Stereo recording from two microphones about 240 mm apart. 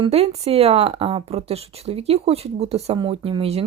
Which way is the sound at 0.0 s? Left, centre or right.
Right.